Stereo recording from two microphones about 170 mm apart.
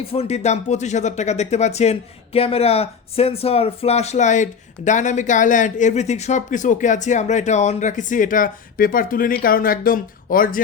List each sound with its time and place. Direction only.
0.0 s speech: 35° left (ahead or behind); by 10.6 s 55° left (ahead or behind)